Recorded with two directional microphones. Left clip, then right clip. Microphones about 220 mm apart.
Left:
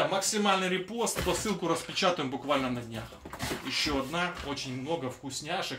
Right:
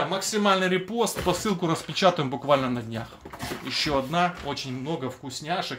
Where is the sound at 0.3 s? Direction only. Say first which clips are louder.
Right 5 dB; 50° right (ahead or behind).